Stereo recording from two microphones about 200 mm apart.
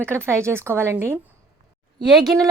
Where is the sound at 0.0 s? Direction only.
10° right (ahead or behind).